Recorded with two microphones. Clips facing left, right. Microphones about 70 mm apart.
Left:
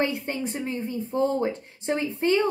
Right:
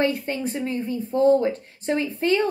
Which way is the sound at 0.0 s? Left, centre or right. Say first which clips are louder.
Right 3 dB; left.